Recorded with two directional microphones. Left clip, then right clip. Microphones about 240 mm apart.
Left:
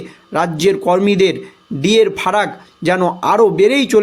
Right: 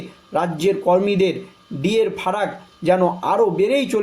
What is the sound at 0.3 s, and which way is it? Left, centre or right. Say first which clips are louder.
Speech: left 5 dB; left.